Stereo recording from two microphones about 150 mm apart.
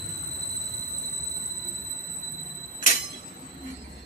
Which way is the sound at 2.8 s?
60° left (ahead or behind).